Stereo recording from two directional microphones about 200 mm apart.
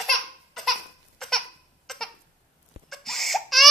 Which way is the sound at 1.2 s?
Centre (ahead or behind).